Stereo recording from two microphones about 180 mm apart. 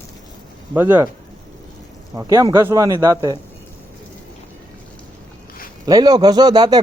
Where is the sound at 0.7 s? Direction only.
10° right (ahead or behind).